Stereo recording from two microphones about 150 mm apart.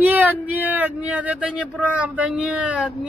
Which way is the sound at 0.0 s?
10° right (ahead or behind).